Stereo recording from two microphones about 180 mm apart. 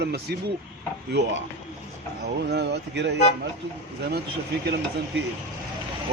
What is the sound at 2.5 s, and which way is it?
Speech, 70° right (ahead or behind).